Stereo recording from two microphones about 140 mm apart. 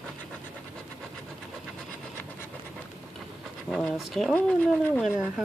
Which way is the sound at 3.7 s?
Centre (ahead or behind).